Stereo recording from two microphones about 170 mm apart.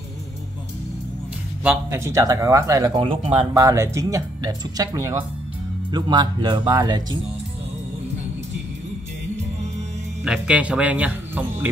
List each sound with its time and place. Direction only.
1.9 s speech: 15° right (ahead or behind)
3.5 s speech: 20° right (ahead or behind)
10.2 s a man's voice: 5° right (ahead or behind)